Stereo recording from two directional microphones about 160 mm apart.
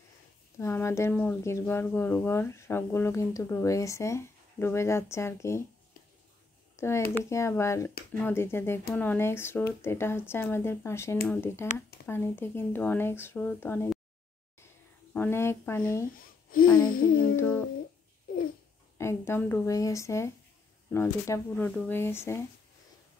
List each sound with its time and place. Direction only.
0.6 s speech: 15° left (ahead or behind)
6.8 s speech: 15° left (ahead or behind)
15.1 s speech: 15° left (ahead or behind)
16.4 s speech: 65° left (ahead or behind)
17.4 s speech: 10° left (ahead or behind)
18.9 s speech: 15° left (ahead or behind)